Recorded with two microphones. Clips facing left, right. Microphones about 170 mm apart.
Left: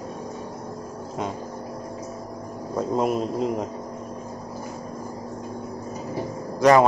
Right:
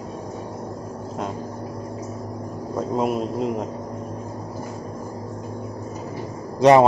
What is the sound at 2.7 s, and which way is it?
Speech, centre (ahead or behind).